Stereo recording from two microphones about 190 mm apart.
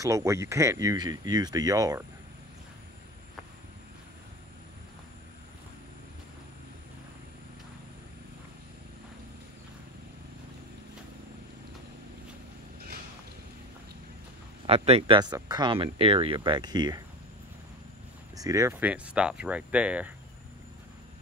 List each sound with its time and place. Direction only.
0.0 s speech: 15° right (ahead or behind)
14.7 s speech: 30° right (ahead or behind)
18.3 s speech: 20° right (ahead or behind)